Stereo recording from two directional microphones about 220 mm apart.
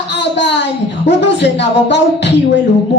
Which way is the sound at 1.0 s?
50° left (ahead or behind).